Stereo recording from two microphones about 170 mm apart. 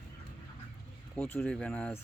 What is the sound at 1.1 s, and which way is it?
Speech, 10° left (ahead or behind).